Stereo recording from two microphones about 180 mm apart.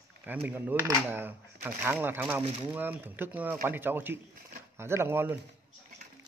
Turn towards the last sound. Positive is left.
turn(degrees=-10)  # may be behind; listen again after turning